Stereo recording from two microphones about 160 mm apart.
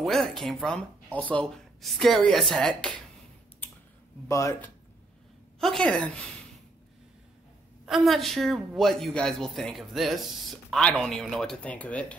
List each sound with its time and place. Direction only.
0.0 s a woman's voice: centre (ahead or behind)
4.3 s speech: 20° left (ahead or behind)
5.6 s a woman's voice: centre (ahead or behind)
7.8 s a woman's voice: centre (ahead or behind)